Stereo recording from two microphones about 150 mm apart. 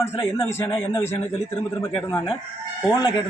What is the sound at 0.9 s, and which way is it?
Speech, 45° left (ahead or behind).